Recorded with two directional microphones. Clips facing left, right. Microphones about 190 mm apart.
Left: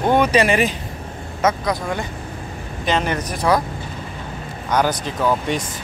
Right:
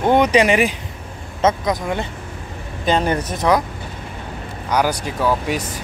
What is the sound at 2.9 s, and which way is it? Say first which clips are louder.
Speech: right 2 dB; 30° right (ahead or behind).